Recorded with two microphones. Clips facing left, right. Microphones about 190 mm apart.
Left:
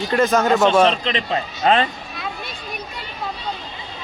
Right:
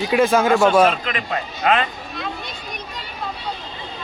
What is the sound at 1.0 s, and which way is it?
Speech, 25° left (ahead or behind).